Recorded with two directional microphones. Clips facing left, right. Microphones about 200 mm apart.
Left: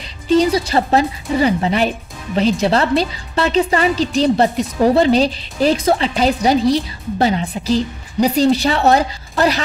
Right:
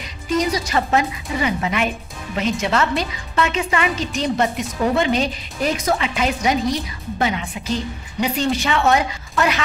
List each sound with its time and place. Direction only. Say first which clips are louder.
0.0 s speech: left 7 dB; 30° left (ahead or behind)